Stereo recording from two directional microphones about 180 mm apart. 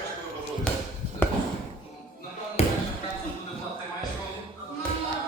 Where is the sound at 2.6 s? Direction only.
35° left (ahead or behind).